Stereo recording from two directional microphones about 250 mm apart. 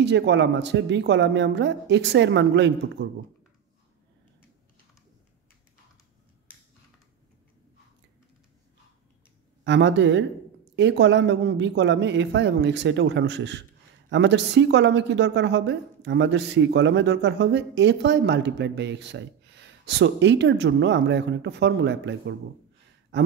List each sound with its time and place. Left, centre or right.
0.0 s a woman's voice: right
9.7 s a woman's voice: right